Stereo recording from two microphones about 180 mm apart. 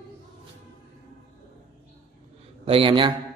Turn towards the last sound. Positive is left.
turn(degrees=-30)  # may be behind; listen again after turning